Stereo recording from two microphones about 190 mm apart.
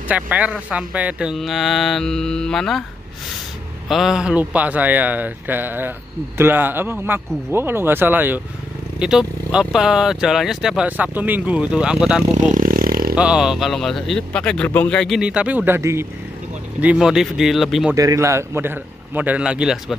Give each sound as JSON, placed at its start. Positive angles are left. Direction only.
{"t": 0.1, "sound": "speech", "side_deg": -5}
{"t": 3.9, "sound": "speech", "side_deg": 0}
{"t": 12.4, "sound": "vehicle", "side_deg": -45}
{"t": 13.1, "sound": "speech", "side_deg": -5}
{"t": 17.9, "sound": "speech", "side_deg": -15}